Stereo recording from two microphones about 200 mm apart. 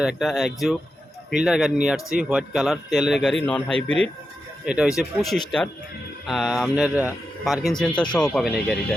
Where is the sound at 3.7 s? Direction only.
30° right (ahead or behind).